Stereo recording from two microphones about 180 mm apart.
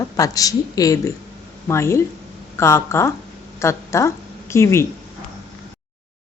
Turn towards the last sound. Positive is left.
turn(degrees=15)  # may be behind; listen again after turning